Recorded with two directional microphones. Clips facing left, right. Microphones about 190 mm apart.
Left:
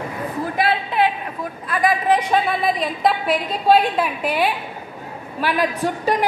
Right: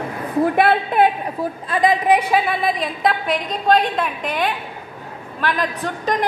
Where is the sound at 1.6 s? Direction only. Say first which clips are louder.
Right 2 dB; 25° right (ahead or behind).